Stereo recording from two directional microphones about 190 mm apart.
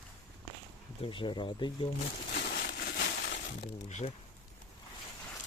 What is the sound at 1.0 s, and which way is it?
Speech, 25° left (ahead or behind).